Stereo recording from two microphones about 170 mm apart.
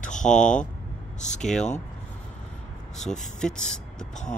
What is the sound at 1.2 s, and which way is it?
Speech, 45° left (ahead or behind).